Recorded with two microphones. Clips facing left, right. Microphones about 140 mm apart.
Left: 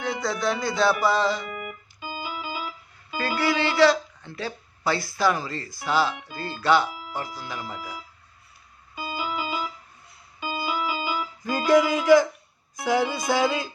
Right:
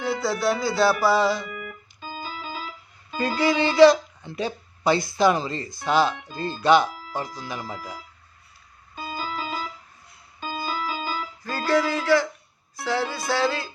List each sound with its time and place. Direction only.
0.0 s speech: 5° right (ahead or behind)
1.6 s organ: 10° left (ahead or behind)
3.2 s speech: 15° right (ahead or behind)
9.0 s keyboard: 10° left (ahead or behind)
10.4 s music: 10° left (ahead or behind)